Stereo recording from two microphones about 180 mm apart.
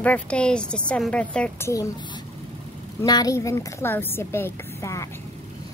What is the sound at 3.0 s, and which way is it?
A woman's voice, 20° left (ahead or behind).